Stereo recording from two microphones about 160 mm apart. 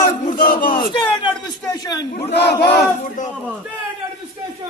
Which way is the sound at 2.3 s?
90° left.